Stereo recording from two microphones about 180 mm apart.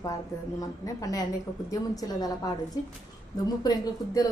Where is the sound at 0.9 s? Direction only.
20° left (ahead or behind).